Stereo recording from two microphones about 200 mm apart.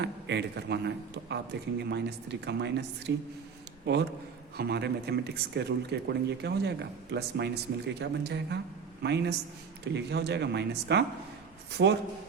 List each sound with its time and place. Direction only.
0.0 s speech: 60° right (ahead or behind)